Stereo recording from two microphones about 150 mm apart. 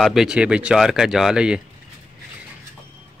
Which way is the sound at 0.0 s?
Centre (ahead or behind).